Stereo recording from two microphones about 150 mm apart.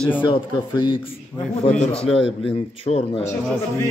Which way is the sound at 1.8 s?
40° left (ahead or behind).